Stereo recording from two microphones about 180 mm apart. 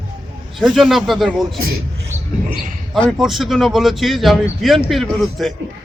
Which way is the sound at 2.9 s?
Centre (ahead or behind).